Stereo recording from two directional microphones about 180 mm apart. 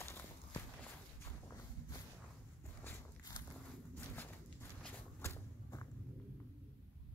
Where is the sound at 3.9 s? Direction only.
10° left (ahead or behind).